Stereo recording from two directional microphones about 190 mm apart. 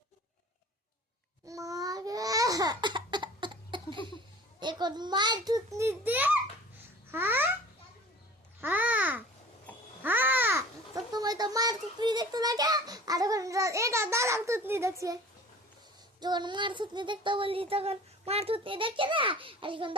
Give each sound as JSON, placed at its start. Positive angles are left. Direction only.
{"t": 1.5, "sound": "babbling", "side_deg": -15}
{"t": 4.6, "sound": "a sound", "side_deg": -25}
{"t": 8.6, "sound": "babbling", "side_deg": -10}
{"t": 16.2, "sound": "child singing", "side_deg": -25}